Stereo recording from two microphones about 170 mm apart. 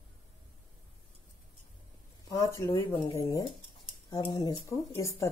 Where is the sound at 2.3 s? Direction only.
20° left (ahead or behind).